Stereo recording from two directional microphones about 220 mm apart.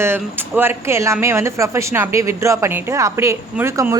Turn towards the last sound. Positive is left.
turn(degrees=-15)  # may be behind; listen again after turning